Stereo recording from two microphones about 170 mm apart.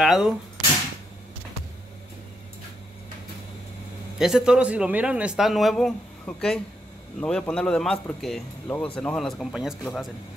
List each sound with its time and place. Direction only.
0.0 s speech: centre (ahead or behind)
4.2 s speech: 5° right (ahead or behind)